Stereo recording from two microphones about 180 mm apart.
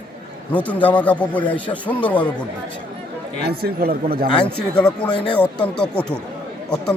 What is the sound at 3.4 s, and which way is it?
Speech, 60° right (ahead or behind).